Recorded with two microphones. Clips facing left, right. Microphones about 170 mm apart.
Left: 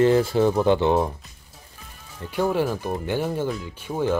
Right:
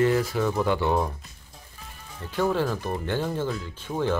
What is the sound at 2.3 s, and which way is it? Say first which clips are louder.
Speech: left 2 dB; 10° left (ahead or behind).